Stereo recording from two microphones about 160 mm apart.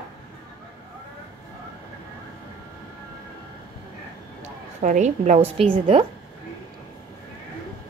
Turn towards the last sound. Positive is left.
turn(degrees=-35)  # may be behind; listen again after turning